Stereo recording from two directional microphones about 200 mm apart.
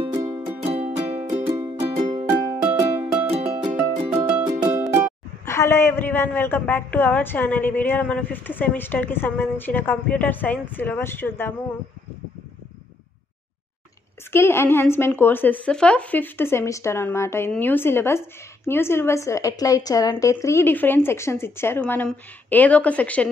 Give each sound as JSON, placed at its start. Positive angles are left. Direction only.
{"t": 0.0, "sound": "music", "side_deg": -20}
{"t": 0.6, "sound": "music", "side_deg": -30}
{"t": 2.6, "sound": "music", "side_deg": -15}
{"t": 3.3, "sound": "music", "side_deg": -30}
{"t": 3.6, "sound": "music", "side_deg": -10}
{"t": 5.4, "sound": "a woman's voice", "side_deg": 15}
{"t": 14.3, "sound": "a woman's voice", "side_deg": 10}